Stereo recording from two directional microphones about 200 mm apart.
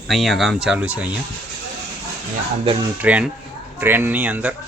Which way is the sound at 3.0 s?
5° right (ahead or behind).